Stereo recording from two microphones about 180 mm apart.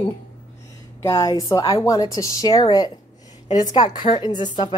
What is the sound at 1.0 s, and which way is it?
A woman's voice, 15° left (ahead or behind).